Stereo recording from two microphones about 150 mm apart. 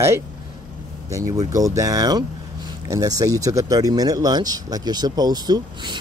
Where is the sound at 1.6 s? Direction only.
20° right (ahead or behind).